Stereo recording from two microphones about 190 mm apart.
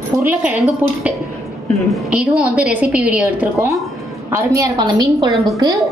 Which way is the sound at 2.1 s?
5° right (ahead or behind).